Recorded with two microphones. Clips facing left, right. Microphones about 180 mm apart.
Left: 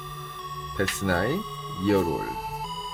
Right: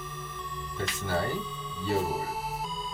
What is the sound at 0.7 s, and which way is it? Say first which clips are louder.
Speech: left 6 dB; 75° left (ahead or behind).